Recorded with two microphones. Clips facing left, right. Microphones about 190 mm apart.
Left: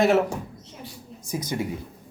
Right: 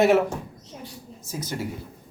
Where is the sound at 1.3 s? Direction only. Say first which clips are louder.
Left 3 dB; 15° left (ahead or behind).